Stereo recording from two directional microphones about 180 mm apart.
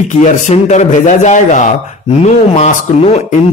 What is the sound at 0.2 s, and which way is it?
A man's voice, 40° left (ahead or behind).